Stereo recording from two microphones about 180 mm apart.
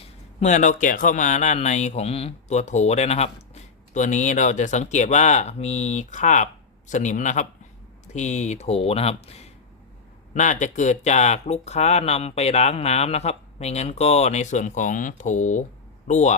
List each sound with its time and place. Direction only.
0.0 s a man's voice: 40° left (ahead or behind)